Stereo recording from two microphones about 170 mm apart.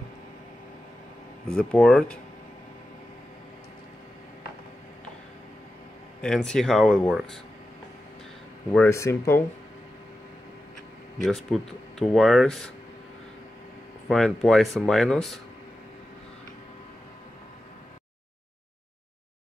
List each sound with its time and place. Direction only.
1.5 s speech: 5° left (ahead or behind)
6.2 s speech: 5° left (ahead or behind)
8.8 s speech: 15° left (ahead or behind)
11.2 s speech: centre (ahead or behind)
14.0 s speech: centre (ahead or behind)